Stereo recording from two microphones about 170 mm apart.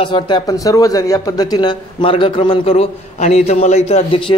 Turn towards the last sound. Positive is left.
turn(degrees=35)  # may be behind; listen again after turning